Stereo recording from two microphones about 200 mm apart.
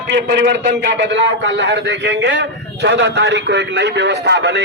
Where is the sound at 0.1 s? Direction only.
60° right (ahead or behind).